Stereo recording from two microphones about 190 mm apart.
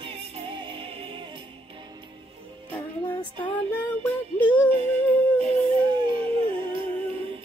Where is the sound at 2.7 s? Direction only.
10° left (ahead or behind).